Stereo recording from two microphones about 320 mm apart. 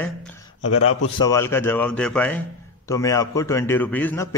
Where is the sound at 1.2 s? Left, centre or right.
Centre.